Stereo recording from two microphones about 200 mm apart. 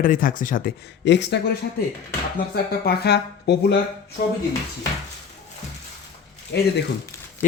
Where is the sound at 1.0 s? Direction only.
60° left (ahead or behind).